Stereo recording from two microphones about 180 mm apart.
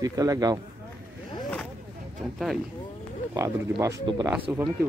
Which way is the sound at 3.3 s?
20° right (ahead or behind).